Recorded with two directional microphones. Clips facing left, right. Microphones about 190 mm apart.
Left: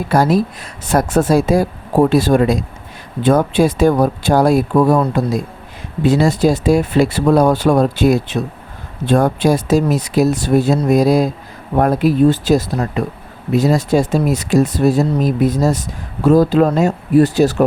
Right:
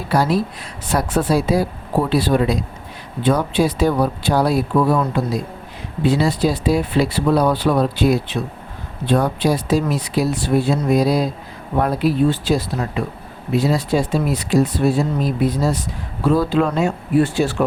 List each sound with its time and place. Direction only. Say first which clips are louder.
0.1 s speech: left 4 dB; 45° left (ahead or behind)